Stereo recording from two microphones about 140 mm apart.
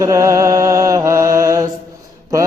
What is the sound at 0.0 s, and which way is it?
Mantra, 20° right (ahead or behind).